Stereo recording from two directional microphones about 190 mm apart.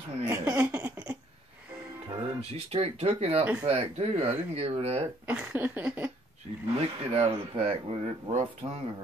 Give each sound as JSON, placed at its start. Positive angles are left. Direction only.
{"t": 0.2, "sound": "a sound", "side_deg": -10}
{"t": 2.0, "sound": "speech", "side_deg": -30}
{"t": 5.2, "sound": "speech", "side_deg": -10}
{"t": 6.7, "sound": "speech", "side_deg": -25}